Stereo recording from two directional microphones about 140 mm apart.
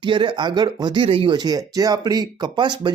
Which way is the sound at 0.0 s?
35° right (ahead or behind).